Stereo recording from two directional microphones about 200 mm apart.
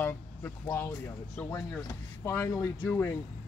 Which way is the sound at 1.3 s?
10° left (ahead or behind).